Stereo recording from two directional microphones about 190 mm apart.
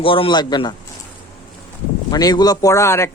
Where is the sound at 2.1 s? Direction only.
20° left (ahead or behind).